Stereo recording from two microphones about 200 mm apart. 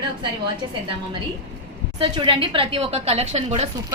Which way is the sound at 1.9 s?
25° right (ahead or behind).